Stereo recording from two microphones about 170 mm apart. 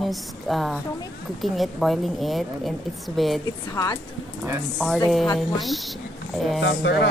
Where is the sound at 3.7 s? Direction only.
20° left (ahead or behind).